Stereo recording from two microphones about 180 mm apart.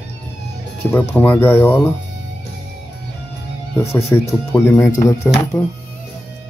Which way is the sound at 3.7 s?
15° left (ahead or behind).